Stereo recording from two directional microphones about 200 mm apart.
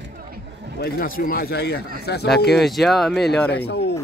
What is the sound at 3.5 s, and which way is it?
Speech, 55° left (ahead or behind).